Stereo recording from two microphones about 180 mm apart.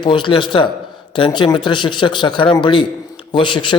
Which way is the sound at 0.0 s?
25° left (ahead or behind).